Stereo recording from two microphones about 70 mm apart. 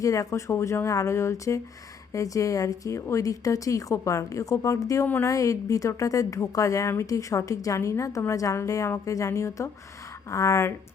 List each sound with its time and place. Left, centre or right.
0.0 s a woman's voice: left